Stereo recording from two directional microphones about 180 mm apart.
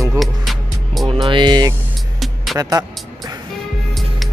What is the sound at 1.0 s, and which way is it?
Speech, 25° right (ahead or behind).